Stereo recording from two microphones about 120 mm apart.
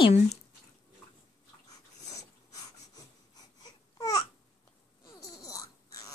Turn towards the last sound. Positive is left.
turn(degrees=30)  # may be behind; listen again after turning